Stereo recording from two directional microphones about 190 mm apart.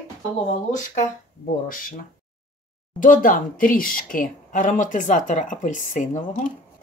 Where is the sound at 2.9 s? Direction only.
45° left (ahead or behind).